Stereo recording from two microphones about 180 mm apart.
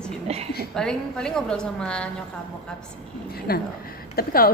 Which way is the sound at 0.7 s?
5° left (ahead or behind).